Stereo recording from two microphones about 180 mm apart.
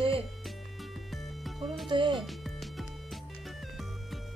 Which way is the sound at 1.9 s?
25° right (ahead or behind).